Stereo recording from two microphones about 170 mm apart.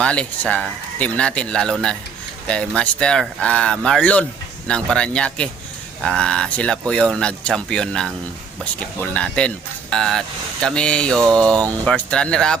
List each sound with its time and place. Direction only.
0.0 s speech: 5° left (ahead or behind)
11.5 s speech: 20° right (ahead or behind)
11.9 s speech: 5° left (ahead or behind)